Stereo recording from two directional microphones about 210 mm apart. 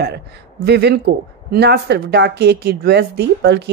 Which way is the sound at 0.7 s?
50° right (ahead or behind).